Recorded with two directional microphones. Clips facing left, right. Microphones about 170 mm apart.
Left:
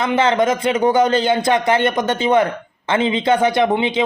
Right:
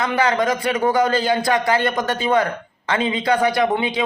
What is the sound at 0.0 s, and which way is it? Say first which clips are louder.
A man's voice: left 3 dB; 20° left (ahead or behind).